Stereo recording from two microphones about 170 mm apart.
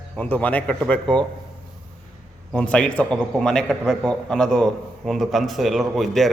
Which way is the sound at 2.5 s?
5° left (ahead or behind).